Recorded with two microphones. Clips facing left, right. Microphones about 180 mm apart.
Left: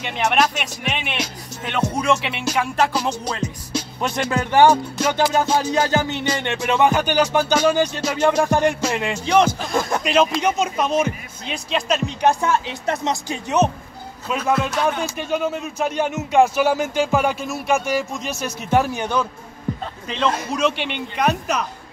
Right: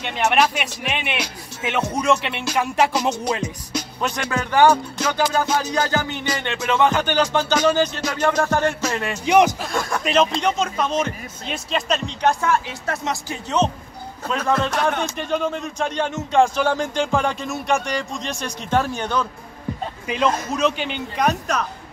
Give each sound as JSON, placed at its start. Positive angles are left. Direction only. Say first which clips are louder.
{"t": 0.0, "sound": "music", "louder": "right 1 dB", "side_deg": 0}
{"t": 4.1, "sound": "speech", "louder": "left 4 dB", "side_deg": 25}
{"t": 9.2, "sound": "a man's voice", "louder": "right 2 dB", "side_deg": -15}
{"t": 9.8, "sound": "speech", "louder": "left 3 dB", "side_deg": 20}
{"t": 10.0, "sound": "music", "louder": "even", "side_deg": 0}
{"t": 10.4, "sound": "speech", "louder": "left 1 dB", "side_deg": 10}
{"t": 11.5, "sound": "music", "louder": "left 1 dB", "side_deg": 0}
{"t": 12.4, "sound": "speech", "louder": "left 1 dB", "side_deg": 25}
{"t": 20.1, "sound": "a man's voice", "louder": "right 1 dB", "side_deg": -10}
{"t": 20.3, "sound": "speech", "louder": "even", "side_deg": 10}